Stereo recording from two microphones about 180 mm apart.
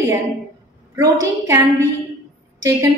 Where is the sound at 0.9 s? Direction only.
20° right (ahead or behind).